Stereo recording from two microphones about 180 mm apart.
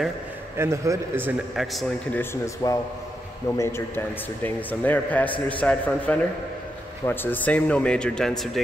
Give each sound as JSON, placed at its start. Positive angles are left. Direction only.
{"t": 0.6, "sound": "a man's voice", "side_deg": -15}
{"t": 1.7, "sound": "speech", "side_deg": 0}
{"t": 2.4, "sound": "a man's voice", "side_deg": 15}